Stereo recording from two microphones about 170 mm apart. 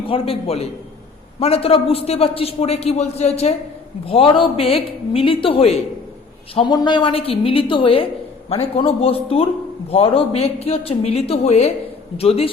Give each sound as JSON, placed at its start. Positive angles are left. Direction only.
{"t": 0.1, "sound": "a man's voice", "side_deg": 35}